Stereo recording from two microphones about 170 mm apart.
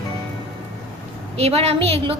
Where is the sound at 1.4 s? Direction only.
35° right (ahead or behind).